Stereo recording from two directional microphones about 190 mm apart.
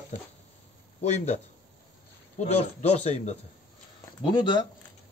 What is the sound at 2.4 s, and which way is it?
Speech, 35° left (ahead or behind).